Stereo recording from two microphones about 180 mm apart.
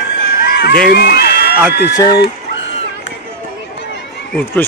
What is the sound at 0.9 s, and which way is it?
A man's voice, 60° left (ahead or behind).